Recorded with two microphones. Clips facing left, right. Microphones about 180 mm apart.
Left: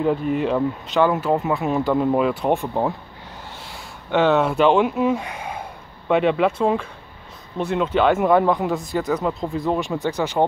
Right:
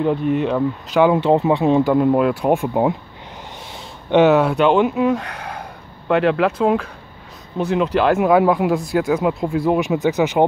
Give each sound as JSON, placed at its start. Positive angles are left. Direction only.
{"t": 0.0, "sound": "speech", "side_deg": 0}
{"t": 1.1, "sound": "speech", "side_deg": -25}
{"t": 2.0, "sound": "speech", "side_deg": 0}
{"t": 3.7, "sound": "a sound", "side_deg": -20}
{"t": 4.3, "sound": "speech", "side_deg": 0}